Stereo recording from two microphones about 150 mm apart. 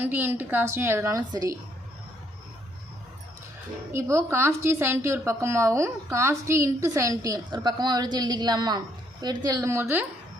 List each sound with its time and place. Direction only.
0.0 s a woman's voice: 15° right (ahead or behind)
3.9 s a woman's voice: 15° right (ahead or behind)